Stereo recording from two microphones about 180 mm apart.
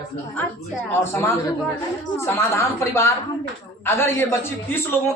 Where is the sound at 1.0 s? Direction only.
15° left (ahead or behind).